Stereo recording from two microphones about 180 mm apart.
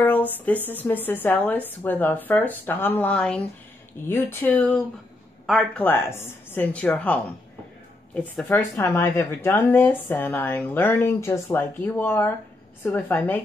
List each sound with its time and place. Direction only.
0.0 s a woman's voice: 10° left (ahead or behind)
5.9 s a woman's voice: 15° left (ahead or behind)
8.4 s a woman's voice: 5° left (ahead or behind)